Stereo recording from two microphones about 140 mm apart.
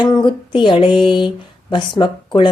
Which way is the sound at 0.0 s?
35° left (ahead or behind).